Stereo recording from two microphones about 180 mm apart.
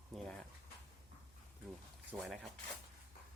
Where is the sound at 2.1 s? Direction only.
25° right (ahead or behind).